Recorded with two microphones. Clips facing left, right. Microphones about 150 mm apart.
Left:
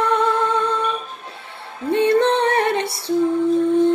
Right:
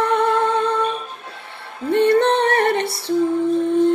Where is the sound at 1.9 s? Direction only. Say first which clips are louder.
Right 1 dB; 60° right (ahead or behind).